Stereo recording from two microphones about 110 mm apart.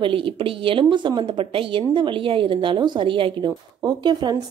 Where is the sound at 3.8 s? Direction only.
40° right (ahead or behind).